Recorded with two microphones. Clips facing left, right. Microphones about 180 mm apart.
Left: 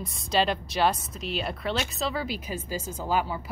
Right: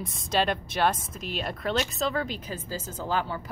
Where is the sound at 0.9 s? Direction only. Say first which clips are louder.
Right 1 dB; 50° right (ahead or behind).